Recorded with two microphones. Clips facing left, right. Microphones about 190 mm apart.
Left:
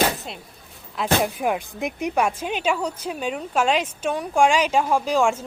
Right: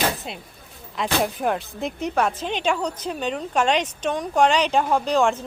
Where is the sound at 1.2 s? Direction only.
5° left (ahead or behind).